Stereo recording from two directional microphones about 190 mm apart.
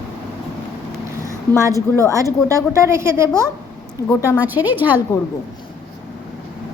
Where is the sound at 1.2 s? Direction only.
15° right (ahead or behind).